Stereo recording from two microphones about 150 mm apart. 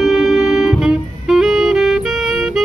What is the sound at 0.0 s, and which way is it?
Saxophone, 5° right (ahead or behind).